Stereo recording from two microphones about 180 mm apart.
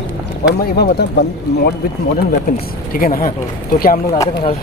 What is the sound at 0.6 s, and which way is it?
Speech, 60° left (ahead or behind).